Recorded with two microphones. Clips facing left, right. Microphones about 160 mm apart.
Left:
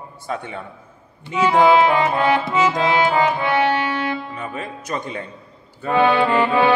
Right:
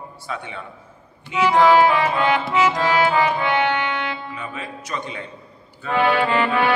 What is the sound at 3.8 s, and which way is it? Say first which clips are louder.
Music: left 3 dB; 40° left (ahead or behind).